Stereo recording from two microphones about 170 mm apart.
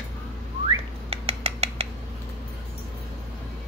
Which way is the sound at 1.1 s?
35° right (ahead or behind).